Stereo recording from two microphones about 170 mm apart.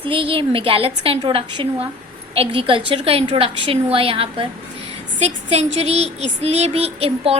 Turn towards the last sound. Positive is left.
turn(degrees=-35)  # may be behind; listen again after turning